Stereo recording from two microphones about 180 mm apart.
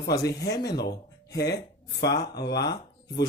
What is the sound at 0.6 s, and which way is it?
A man's voice, 65° left (ahead or behind).